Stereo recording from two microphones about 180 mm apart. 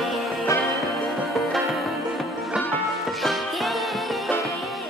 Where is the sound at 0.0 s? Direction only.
Centre (ahead or behind).